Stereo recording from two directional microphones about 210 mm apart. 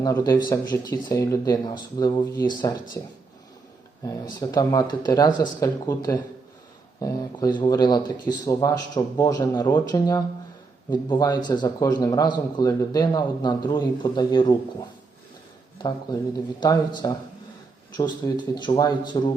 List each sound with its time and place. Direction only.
0.0 s a man's voice: 20° left (ahead or behind)
4.0 s a man's voice: 15° left (ahead or behind)
16.6 s a man's voice: 20° left (ahead or behind)